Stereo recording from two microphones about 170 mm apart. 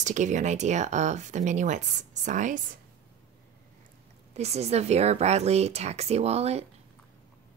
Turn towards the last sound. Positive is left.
turn(degrees=-40)  # may be behind; listen again after turning